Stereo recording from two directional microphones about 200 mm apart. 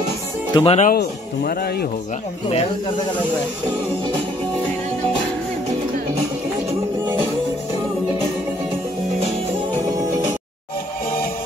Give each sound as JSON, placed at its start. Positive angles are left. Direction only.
{"t": 0.6, "sound": "speech", "side_deg": 35}
{"t": 0.9, "sound": "a man's voice", "side_deg": 50}